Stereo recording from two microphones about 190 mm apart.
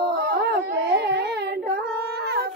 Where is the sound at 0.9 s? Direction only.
55° right (ahead or behind).